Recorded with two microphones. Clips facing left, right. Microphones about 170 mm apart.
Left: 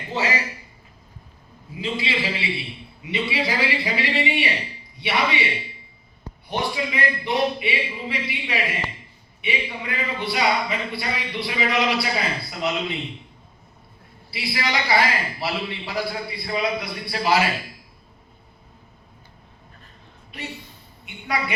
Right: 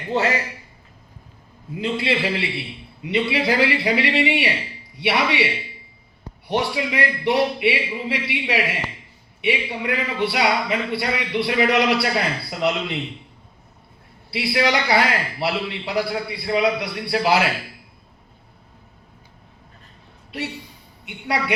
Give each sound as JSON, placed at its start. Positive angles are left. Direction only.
{"t": 0.1, "sound": "a man's voice", "side_deg": -60}
{"t": 1.7, "sound": "a man's voice", "side_deg": -60}
{"t": 6.5, "sound": "speech", "side_deg": -70}
{"t": 9.8, "sound": "speech", "side_deg": -70}
{"t": 14.3, "sound": "speech", "side_deg": -65}
{"t": 21.0, "sound": "a sound", "side_deg": -75}